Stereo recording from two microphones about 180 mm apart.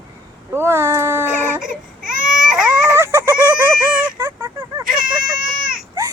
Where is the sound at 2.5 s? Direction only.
5° right (ahead or behind).